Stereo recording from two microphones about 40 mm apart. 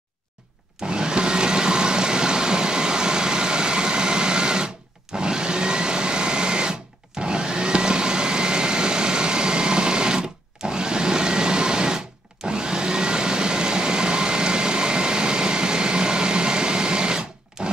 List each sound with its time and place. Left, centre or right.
0.8 s vehicle: right
5.1 s vacuum cleaner: centre
17.6 s rub: centre